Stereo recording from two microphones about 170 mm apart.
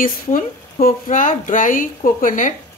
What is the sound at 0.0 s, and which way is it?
A woman's voice, 55° left (ahead or behind).